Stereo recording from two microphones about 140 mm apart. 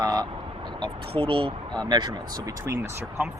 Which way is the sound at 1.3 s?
40° right (ahead or behind).